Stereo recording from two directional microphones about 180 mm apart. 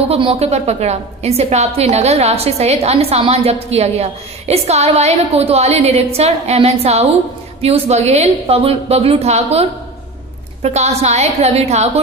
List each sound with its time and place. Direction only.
0.1 s a woman's voice: 35° right (ahead or behind)